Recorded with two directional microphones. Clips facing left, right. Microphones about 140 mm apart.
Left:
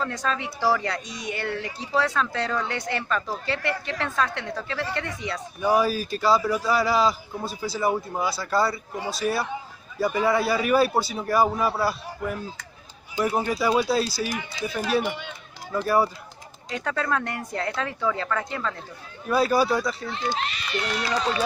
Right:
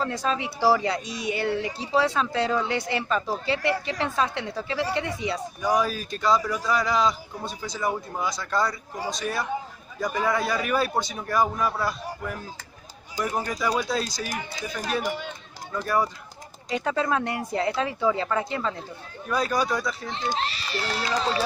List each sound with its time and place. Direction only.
0.0 s speech: 10° right (ahead or behind)
5.6 s a man's voice: 5° left (ahead or behind)
14.2 s speech: 45° right (ahead or behind)
15.7 s a man's voice: 10° left (ahead or behind)
16.6 s speech: 15° right (ahead or behind)
19.2 s a man's voice: 5° left (ahead or behind)
20.3 s speech: 35° right (ahead or behind)